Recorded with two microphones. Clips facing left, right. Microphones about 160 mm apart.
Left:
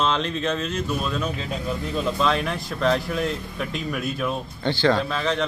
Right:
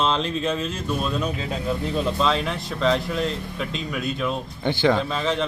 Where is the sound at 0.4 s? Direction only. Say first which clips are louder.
Right 1 dB; 5° right (ahead or behind).